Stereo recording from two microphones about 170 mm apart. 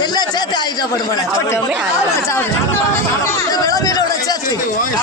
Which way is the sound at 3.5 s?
20° left (ahead or behind).